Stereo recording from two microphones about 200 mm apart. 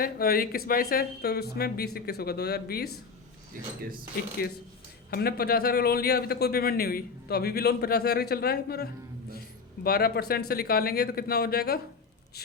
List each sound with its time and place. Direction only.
0.0 s speech: 50° left (ahead or behind)
5.1 s speech: 50° left (ahead or behind)